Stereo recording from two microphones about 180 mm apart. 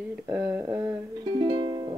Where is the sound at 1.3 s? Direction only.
25° right (ahead or behind).